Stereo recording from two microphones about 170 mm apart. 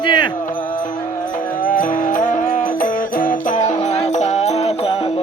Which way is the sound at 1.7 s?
55° left (ahead or behind).